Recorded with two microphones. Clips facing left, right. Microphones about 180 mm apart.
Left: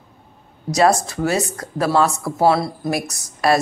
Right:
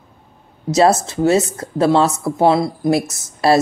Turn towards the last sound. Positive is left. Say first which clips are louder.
# right 3 dB
turn(degrees=-25)  # may be behind; listen again after turning